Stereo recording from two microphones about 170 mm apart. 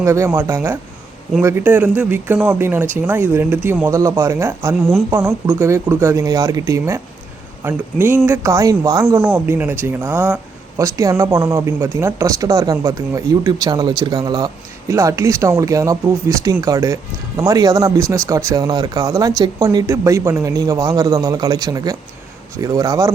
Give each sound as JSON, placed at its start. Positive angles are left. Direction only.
{"t": 0.0, "sound": "speech", "side_deg": -15}